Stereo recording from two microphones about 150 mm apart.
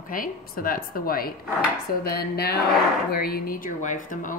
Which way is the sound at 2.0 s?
90° left.